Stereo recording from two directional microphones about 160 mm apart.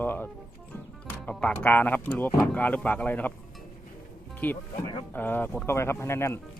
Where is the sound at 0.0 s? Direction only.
10° left (ahead or behind).